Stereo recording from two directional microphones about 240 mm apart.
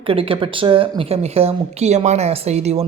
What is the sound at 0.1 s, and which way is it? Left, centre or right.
Speech, right.